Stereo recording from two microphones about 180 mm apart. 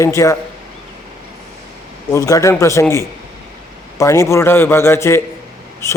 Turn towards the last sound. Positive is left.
turn(degrees=15)  # may be behind; listen again after turning